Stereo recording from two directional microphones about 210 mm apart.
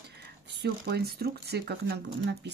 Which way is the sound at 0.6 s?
50° right (ahead or behind).